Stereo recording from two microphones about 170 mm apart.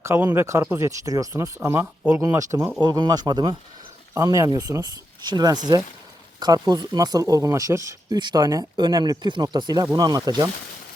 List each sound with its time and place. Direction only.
0.0 s speech: 15° right (ahead or behind)